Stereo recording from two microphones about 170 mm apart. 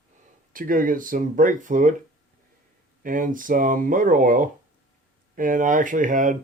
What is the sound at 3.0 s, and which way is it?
Speech, 55° right (ahead or behind).